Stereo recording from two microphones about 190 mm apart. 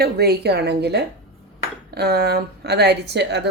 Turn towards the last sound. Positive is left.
turn(degrees=-60)  # may be behind; listen again after turning